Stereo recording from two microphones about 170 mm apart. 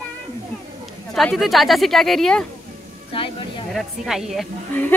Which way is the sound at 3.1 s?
30° left (ahead or behind).